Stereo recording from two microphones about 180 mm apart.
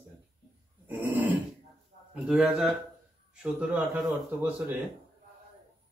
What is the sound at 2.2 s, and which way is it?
Speech, centre (ahead or behind).